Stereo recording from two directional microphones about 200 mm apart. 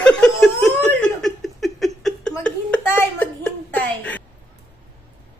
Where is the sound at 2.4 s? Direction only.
10° left (ahead or behind).